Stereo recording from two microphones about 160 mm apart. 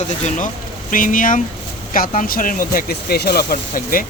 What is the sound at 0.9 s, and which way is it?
Speech, 55° left (ahead or behind).